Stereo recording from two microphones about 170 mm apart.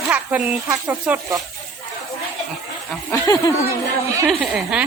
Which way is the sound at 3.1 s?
20° left (ahead or behind).